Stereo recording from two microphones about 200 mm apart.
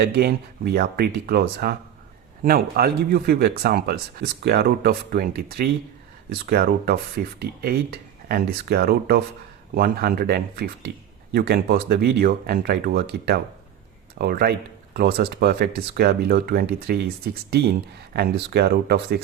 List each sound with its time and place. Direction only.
0.0 s speech: 50° right (ahead or behind)